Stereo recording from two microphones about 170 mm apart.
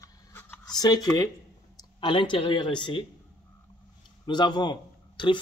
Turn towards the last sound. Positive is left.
turn(degrees=25)  # may be behind; listen again after turning